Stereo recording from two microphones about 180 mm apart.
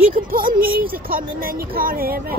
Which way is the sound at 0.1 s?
55° right (ahead or behind).